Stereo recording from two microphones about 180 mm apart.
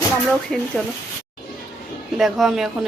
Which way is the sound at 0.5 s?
5° left (ahead or behind).